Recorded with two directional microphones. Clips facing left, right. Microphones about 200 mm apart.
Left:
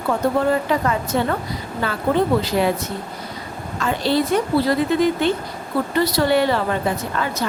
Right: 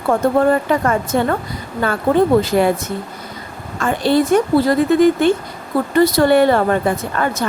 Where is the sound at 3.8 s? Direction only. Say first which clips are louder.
Right 4 dB; 50° right (ahead or behind).